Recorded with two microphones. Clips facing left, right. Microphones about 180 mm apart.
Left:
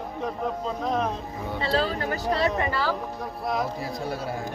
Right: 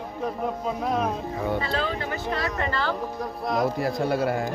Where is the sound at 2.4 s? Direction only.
15° left (ahead or behind).